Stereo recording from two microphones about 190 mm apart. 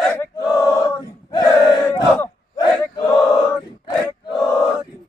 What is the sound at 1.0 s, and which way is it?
Battle cry, 20° left (ahead or behind).